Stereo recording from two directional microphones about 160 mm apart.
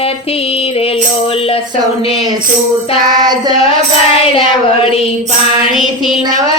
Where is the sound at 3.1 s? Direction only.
25° right (ahead or behind).